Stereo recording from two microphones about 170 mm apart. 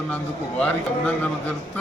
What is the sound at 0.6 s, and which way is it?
Speech, 5° left (ahead or behind).